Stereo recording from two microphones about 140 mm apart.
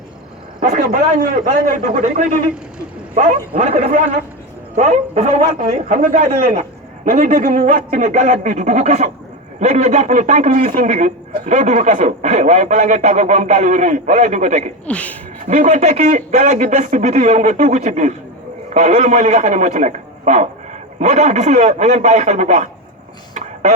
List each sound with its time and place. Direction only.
0.8 s a man's voice: 80° right
3.2 s a man's voice: 50° right (ahead or behind)
5.9 s a man's voice: 65° right (ahead or behind)
14.8 s speech: 10° left (ahead or behind)
15.4 s a man's voice: 60° right (ahead or behind)